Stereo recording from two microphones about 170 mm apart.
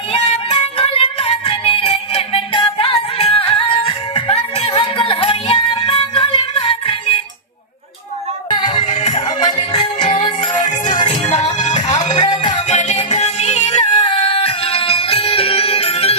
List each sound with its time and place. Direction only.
0.1 s music: 30° left (ahead or behind)
8.4 s music: 25° left (ahead or behind)
8.9 s music: 45° left (ahead or behind)
9.1 s music: 25° left (ahead or behind); by 12.2 s 45° left (ahead or behind)
12.2 s music: 25° left (ahead or behind)
12.6 s music: 45° left (ahead or behind)